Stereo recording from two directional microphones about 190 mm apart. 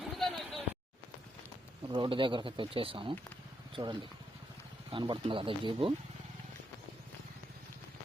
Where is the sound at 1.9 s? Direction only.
25° right (ahead or behind).